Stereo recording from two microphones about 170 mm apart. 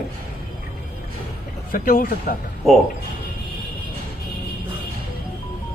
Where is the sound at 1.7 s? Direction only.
55° left (ahead or behind).